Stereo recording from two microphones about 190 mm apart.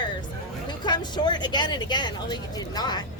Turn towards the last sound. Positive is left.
turn(degrees=20)  # may be behind; listen again after turning